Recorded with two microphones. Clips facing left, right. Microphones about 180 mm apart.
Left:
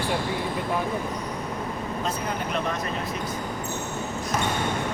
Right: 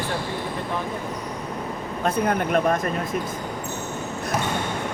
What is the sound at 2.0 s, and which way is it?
Speech, 55° right (ahead or behind).